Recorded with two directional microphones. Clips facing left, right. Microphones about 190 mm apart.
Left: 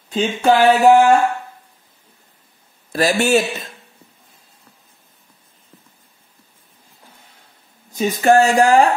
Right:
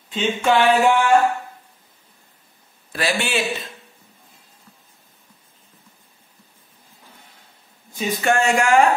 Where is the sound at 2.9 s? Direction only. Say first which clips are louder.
Left 8 dB; 40° left (ahead or behind).